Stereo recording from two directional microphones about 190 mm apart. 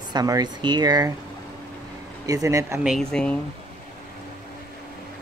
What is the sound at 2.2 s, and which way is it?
Speech, 15° right (ahead or behind).